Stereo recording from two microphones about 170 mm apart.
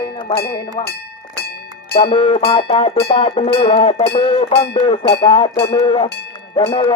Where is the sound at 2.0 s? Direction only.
30° left (ahead or behind).